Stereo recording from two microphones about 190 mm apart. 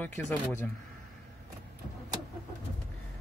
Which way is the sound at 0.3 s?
5° left (ahead or behind).